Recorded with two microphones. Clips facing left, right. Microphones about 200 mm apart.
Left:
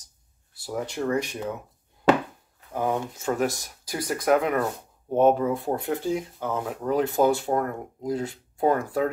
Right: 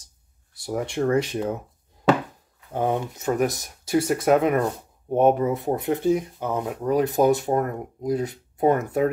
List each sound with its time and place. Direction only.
0.7 s speech: 25° right (ahead or behind)
2.7 s speech: 25° right (ahead or behind)